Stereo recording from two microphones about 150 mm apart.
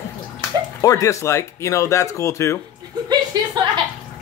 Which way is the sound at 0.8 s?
25° left (ahead or behind).